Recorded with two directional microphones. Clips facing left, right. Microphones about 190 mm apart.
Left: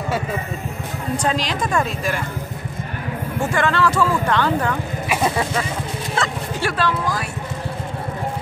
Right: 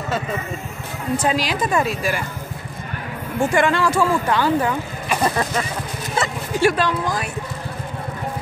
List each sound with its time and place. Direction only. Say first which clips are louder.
1.1 s speech: right 2 dB; 5° right (ahead or behind)
3.5 s speech: even; 15° right (ahead or behind)
5.0 s vehicle: even; 5° left (ahead or behind)
6.6 s speech: right 4 dB; 20° right (ahead or behind)